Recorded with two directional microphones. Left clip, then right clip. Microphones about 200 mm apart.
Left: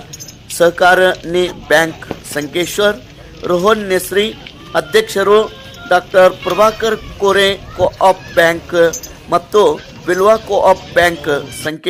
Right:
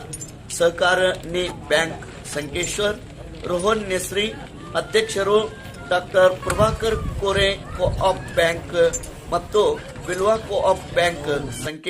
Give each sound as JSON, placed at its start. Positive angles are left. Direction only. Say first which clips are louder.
{"t": 0.6, "sound": "a man's voice", "louder": "left 8 dB", "side_deg": 40}